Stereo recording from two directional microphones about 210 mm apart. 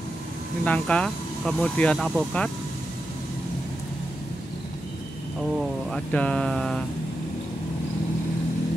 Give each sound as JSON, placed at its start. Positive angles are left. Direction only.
{"t": 0.7, "sound": "speech", "side_deg": 5}
{"t": 5.6, "sound": "speech", "side_deg": 0}